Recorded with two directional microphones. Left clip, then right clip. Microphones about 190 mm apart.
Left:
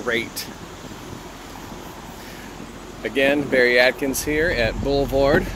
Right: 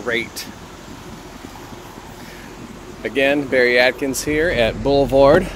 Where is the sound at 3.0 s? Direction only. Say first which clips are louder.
Right 2 dB; 25° right (ahead or behind).